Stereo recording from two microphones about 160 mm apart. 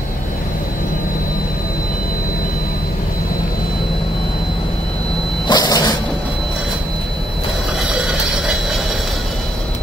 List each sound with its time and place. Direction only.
5.5 s dog: 25° left (ahead or behind)
7.9 s train: 5° right (ahead or behind)